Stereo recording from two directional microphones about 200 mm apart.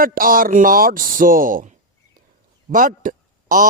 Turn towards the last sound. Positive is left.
turn(degrees=-40)  # may be behind; listen again after turning